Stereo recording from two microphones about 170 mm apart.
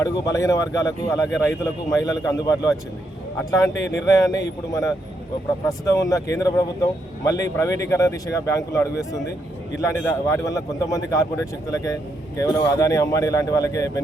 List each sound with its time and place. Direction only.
0.0 s a man's voice: 20° left (ahead or behind)
10.2 s speech: 20° left (ahead or behind)